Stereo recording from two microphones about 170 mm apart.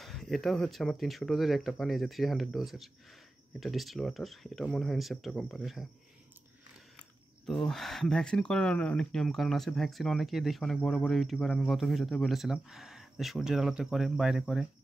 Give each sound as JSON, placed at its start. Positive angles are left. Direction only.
{"t": 0.0, "sound": "speech", "side_deg": 0}
{"t": 7.4, "sound": "speech", "side_deg": 0}